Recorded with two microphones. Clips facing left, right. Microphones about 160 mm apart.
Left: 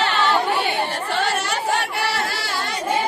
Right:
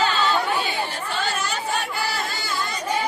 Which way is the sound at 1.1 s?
70° left (ahead or behind).